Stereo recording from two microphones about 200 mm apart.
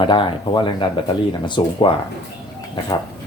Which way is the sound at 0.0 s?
25° left (ahead or behind).